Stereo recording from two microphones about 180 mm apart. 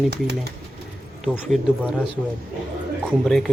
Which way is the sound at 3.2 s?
5° left (ahead or behind).